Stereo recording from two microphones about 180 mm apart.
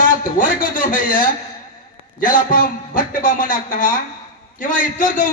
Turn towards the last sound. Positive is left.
turn(degrees=45)  # may be behind; listen again after turning